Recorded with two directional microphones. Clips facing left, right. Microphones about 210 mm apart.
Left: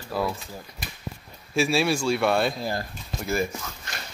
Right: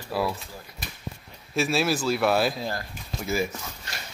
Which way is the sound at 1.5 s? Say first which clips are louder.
Left 2 dB; centre (ahead or behind).